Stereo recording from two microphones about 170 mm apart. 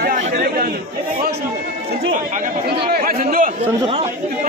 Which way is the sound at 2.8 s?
60° right (ahead or behind).